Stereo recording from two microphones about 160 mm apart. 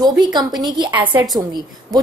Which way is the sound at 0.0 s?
25° right (ahead or behind).